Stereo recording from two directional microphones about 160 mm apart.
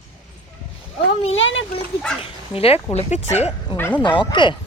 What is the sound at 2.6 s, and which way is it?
Speech, 35° left (ahead or behind).